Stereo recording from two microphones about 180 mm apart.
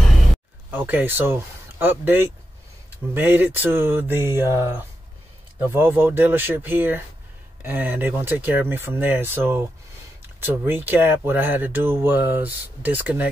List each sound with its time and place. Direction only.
0.7 s speech: 10° right (ahead or behind)